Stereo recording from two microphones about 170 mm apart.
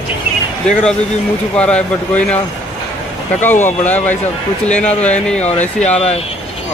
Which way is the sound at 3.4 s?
15° left (ahead or behind).